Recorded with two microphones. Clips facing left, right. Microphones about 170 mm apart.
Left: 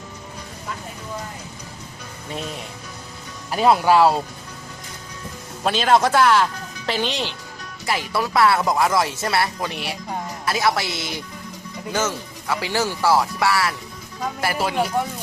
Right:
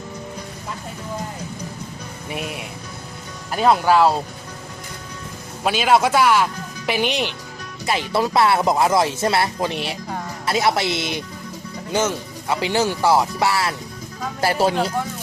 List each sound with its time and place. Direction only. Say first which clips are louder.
2.3 s speech: right 1 dB; 15° right (ahead or behind)
3.5 s speech: even; 5° left (ahead or behind)
5.6 s speech: right 1 dB; 5° right (ahead or behind); by 14.8 s 30° right (ahead or behind)